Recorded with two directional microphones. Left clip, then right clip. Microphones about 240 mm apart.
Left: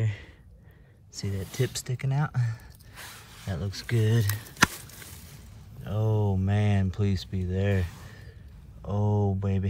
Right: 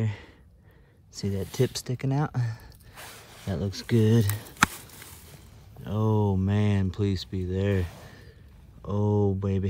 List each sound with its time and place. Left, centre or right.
0.0 s a sound: centre
1.1 s speech: centre
3.2 s a sound: right
3.4 s speech: centre
5.9 s speech: centre
8.8 s speech: centre